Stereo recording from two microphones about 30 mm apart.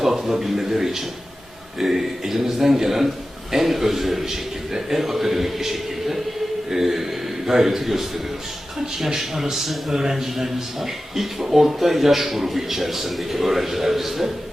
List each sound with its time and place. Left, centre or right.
0.2 s a man's voice: right